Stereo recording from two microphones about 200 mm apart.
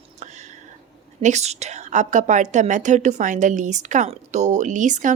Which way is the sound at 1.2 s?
35° right (ahead or behind).